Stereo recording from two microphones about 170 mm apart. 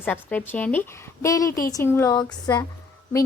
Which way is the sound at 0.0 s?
10° left (ahead or behind).